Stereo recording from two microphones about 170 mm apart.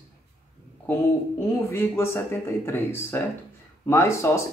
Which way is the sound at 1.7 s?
15° left (ahead or behind).